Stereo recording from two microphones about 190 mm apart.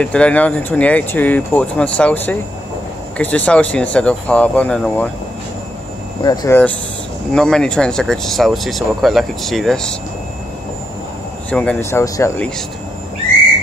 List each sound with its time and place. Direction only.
0.0 s speech: 5° left (ahead or behind)
6.2 s speech: 20° left (ahead or behind)
7.3 s speech: 5° left (ahead or behind)
11.5 s speech: 10° left (ahead or behind)